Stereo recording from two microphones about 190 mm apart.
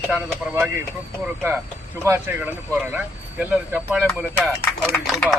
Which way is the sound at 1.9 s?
15° right (ahead or behind).